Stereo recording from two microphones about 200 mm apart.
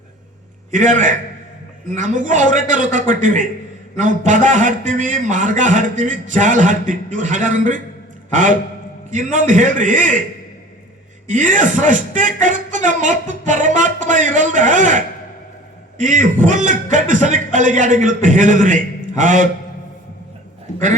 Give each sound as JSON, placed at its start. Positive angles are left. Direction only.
{"t": 0.7, "sound": "a man's voice", "side_deg": -40}
{"t": 11.3, "sound": "a man's voice", "side_deg": -40}